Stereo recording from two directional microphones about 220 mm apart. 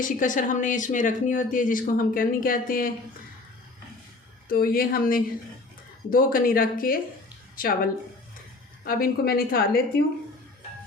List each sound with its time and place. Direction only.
0.0 s speech: 35° left (ahead or behind)
4.4 s speech: 40° left (ahead or behind)
8.8 s a woman's voice: 40° left (ahead or behind)